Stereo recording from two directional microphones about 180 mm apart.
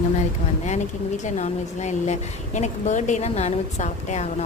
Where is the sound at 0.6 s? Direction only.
40° left (ahead or behind).